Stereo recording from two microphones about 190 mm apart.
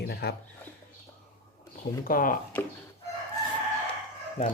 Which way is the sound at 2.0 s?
50° left (ahead or behind).